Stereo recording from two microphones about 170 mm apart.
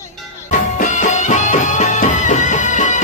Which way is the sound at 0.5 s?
45° left (ahead or behind).